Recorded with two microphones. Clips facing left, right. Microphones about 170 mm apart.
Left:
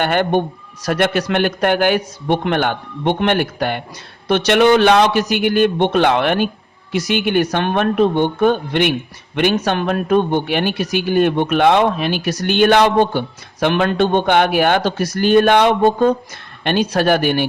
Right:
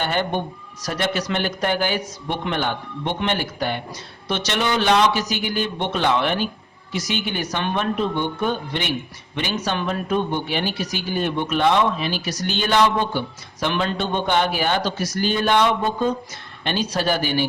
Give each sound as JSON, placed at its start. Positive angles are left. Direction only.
{"t": 0.0, "sound": "speech", "side_deg": 60}